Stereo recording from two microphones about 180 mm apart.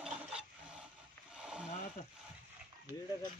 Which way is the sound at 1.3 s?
5° right (ahead or behind).